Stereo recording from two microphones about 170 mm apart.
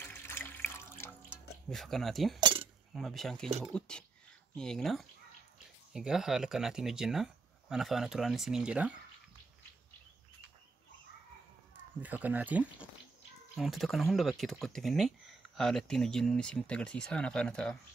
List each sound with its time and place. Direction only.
0.0 s water: 10° left (ahead or behind)
1.7 s speech: centre (ahead or behind)
2.4 s a sound: 30° right (ahead or behind)
2.9 s speech: centre (ahead or behind)
12.0 s speech: 10° right (ahead or behind)